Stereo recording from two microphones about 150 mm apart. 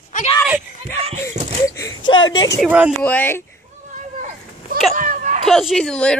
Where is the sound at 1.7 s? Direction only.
25° left (ahead or behind).